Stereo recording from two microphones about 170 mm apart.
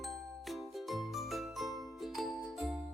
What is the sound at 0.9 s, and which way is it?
Jingle, centre (ahead or behind).